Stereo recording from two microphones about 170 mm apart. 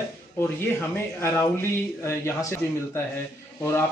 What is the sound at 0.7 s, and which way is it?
A man's voice, 15° left (ahead or behind).